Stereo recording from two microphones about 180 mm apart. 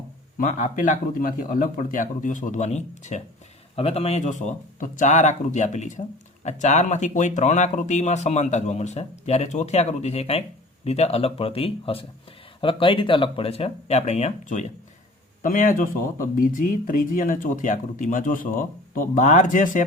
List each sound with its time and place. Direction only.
0.3 s speech: 45° left (ahead or behind)